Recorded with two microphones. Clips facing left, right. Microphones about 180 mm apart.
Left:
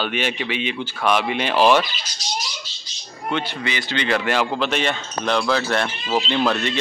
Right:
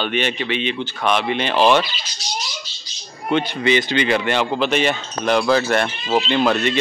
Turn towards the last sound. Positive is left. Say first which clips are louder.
# right 3 dB
turn(degrees=0)  # may be behind; listen again after turning